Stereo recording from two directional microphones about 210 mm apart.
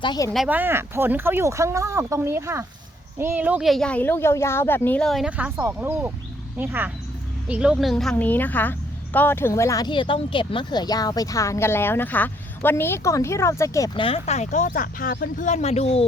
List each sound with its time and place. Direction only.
0.0 s speech: 20° left (ahead or behind)
0.3 s speech: 5° right (ahead or behind); by 16.0 s 30° left (ahead or behind)